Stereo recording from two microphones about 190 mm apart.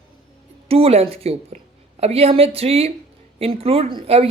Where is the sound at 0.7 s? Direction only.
30° right (ahead or behind).